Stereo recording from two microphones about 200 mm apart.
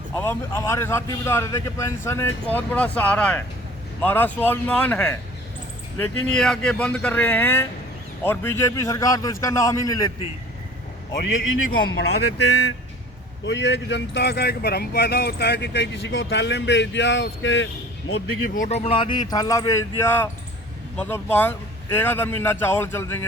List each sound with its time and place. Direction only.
0.2 s a man's voice: 10° left (ahead or behind)
11.9 s speech: 60° left (ahead or behind)
18.4 s a man's voice: 40° left (ahead or behind); by 23.2 s 10° left (ahead or behind)